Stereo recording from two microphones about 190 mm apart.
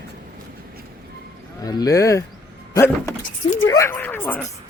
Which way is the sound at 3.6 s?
15° left (ahead or behind).